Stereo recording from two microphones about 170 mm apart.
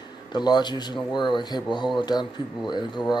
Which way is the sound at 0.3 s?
25° left (ahead or behind).